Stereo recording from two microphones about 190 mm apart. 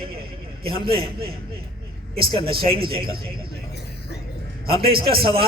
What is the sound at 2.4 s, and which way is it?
Speech, 30° right (ahead or behind).